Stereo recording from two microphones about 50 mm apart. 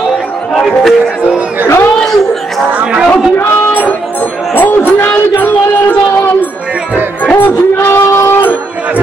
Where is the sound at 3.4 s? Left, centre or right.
Left.